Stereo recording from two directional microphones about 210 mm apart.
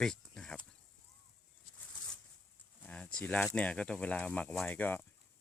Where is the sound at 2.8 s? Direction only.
5° left (ahead or behind).